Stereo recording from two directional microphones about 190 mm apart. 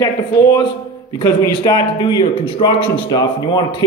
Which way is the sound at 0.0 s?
20° left (ahead or behind).